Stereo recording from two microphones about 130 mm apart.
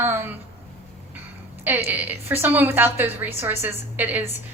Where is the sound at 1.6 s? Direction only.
15° right (ahead or behind).